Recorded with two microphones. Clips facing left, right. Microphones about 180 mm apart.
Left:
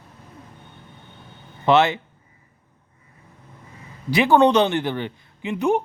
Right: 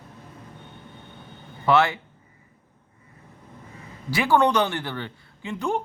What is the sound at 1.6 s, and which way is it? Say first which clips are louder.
Speech: left 3 dB; 20° left (ahead or behind).